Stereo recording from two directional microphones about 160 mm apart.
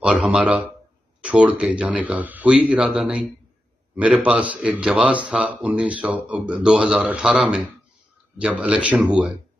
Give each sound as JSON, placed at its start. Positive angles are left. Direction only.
{"t": 0.0, "sound": "a man's voice", "side_deg": -5}